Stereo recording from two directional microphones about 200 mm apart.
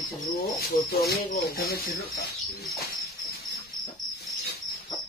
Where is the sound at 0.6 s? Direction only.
50° left (ahead or behind).